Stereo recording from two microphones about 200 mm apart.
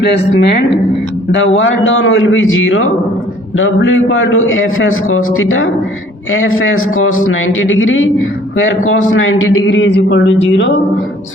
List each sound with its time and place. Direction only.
0.0 s a woman's voice: 55° left (ahead or behind)
1.3 s a man's voice: 65° left (ahead or behind)